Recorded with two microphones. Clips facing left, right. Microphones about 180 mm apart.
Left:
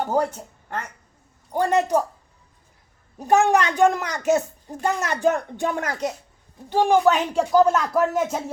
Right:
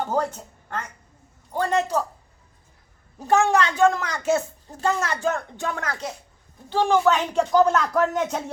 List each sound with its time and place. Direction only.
0.0 s a woman's voice: 10° left (ahead or behind)
3.2 s a woman's voice: 15° left (ahead or behind)